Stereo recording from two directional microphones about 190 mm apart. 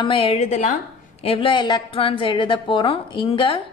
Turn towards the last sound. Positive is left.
turn(degrees=25)  # may be behind; listen again after turning